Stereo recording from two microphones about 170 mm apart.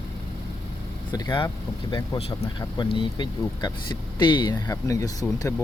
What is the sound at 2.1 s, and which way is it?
Speech, 30° left (ahead or behind).